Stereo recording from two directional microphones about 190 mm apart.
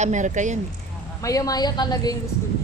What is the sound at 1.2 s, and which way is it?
Speech, 20° left (ahead or behind).